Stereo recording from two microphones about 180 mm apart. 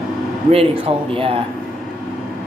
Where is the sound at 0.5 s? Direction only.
30° right (ahead or behind).